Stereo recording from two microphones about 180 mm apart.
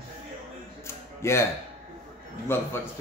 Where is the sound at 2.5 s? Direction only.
15° left (ahead or behind).